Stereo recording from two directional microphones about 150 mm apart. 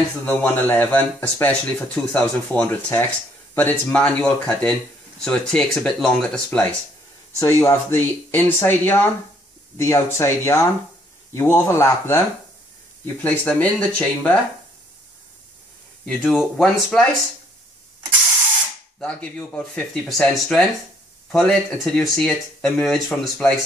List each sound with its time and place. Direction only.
0.2 s speech: 10° left (ahead or behind)
7.3 s speech: 20° left (ahead or behind)
16.1 s speech: 5° left (ahead or behind)
18.9 s speech: 5° left (ahead or behind)